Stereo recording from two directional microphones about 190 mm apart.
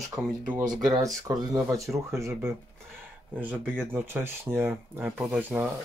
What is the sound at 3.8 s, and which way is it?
Speech, 10° right (ahead or behind).